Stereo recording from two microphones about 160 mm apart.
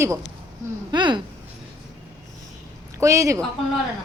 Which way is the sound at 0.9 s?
30° right (ahead or behind).